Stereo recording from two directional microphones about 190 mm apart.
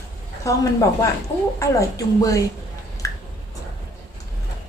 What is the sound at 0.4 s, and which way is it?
A woman's voice, 15° left (ahead or behind).